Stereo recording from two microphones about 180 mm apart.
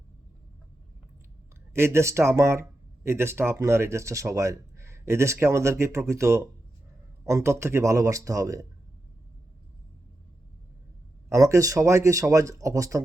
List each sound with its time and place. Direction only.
1.7 s speech: 15° right (ahead or behind)
11.3 s speech: 15° right (ahead or behind)